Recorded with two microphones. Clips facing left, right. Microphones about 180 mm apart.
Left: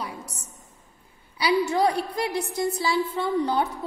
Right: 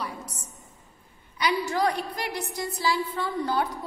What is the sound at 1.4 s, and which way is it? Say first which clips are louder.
A woman's voice: left 4 dB; 30° left (ahead or behind).